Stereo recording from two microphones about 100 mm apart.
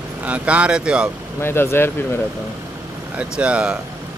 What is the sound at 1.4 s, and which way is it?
Speech, 25° left (ahead or behind).